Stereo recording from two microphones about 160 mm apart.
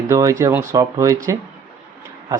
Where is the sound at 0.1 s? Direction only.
20° right (ahead or behind).